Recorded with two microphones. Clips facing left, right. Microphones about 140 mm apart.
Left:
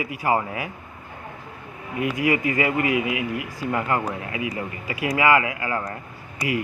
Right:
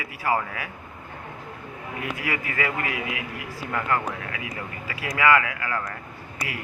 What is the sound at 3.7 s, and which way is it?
Speech, 20° left (ahead or behind).